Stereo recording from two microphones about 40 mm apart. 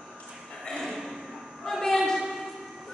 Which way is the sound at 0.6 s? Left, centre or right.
Centre.